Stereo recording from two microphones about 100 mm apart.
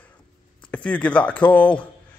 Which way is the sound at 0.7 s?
15° left (ahead or behind).